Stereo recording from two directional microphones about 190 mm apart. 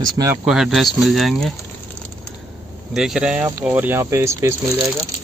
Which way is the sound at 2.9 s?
5° right (ahead or behind).